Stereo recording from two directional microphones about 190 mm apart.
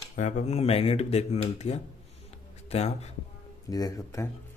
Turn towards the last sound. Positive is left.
turn(degrees=20)  # may be behind; listen again after turning